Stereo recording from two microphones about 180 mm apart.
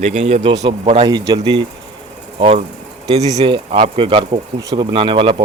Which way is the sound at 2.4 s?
35° right (ahead or behind).